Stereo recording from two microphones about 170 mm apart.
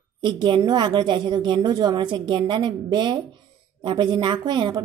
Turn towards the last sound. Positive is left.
turn(degrees=-25)  # may be behind; listen again after turning